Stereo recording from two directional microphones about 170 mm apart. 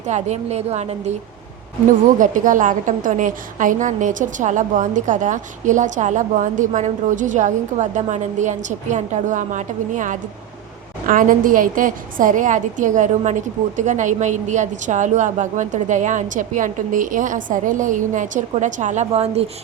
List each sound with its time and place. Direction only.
0.1 s a woman's voice: 40° right (ahead or behind)
2.1 s a woman's voice: 50° right (ahead or behind)